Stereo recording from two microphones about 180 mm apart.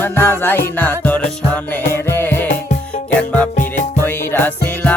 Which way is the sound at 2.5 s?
40° left (ahead or behind).